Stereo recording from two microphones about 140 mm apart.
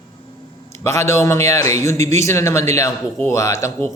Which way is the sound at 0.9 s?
20° left (ahead or behind).